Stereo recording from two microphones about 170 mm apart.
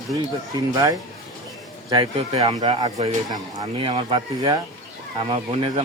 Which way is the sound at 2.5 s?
25° right (ahead or behind).